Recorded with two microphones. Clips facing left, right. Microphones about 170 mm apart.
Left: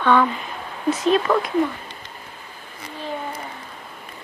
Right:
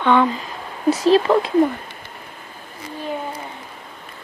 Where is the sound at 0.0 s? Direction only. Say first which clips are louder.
Right 1 dB; 20° right (ahead or behind).